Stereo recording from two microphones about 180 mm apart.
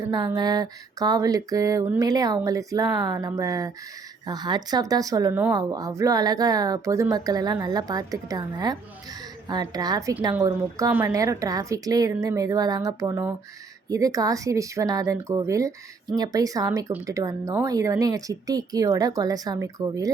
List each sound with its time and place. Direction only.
0.1 s speech: 25° right (ahead or behind)